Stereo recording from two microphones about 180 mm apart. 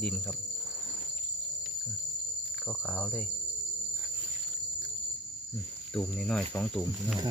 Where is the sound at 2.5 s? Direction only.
5° left (ahead or behind).